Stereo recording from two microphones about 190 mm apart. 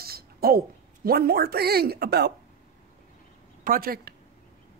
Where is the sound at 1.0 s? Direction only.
55° right (ahead or behind).